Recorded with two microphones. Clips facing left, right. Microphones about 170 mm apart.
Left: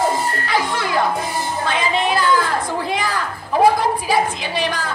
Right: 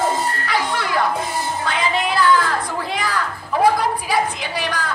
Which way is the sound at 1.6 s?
25° left (ahead or behind).